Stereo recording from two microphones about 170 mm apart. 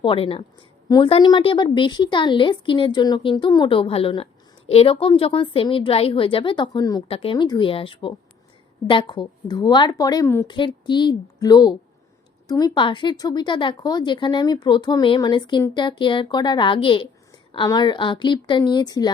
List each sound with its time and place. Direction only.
0.0 s a woman's voice: 30° left (ahead or behind); by 10.4 s 15° left (ahead or behind)
10.4 s speech: 30° left (ahead or behind)